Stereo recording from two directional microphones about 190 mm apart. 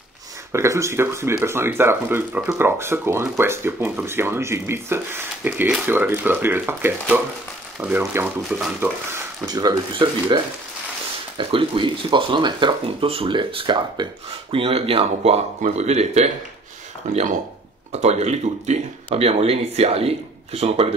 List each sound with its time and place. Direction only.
0.5 s speech: 15° right (ahead or behind); by 20.9 s 35° right (ahead or behind)